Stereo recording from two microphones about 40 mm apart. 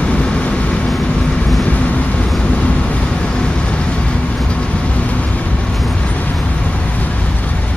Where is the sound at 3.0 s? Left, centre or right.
Left.